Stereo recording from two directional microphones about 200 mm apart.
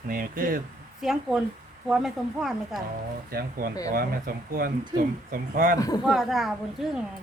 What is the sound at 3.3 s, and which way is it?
Speech, 50° right (ahead or behind).